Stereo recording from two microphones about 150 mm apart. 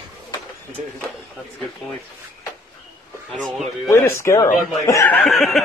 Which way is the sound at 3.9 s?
15° left (ahead or behind).